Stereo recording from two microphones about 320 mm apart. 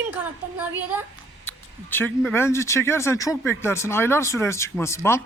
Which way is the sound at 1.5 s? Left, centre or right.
Centre.